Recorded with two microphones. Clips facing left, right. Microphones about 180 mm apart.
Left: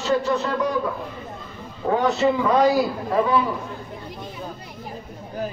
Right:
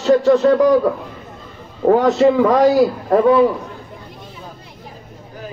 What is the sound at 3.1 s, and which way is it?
Speech, 60° right (ahead or behind).